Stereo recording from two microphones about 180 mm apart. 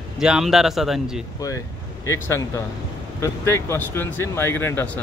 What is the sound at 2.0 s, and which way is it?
Speech, 15° left (ahead or behind).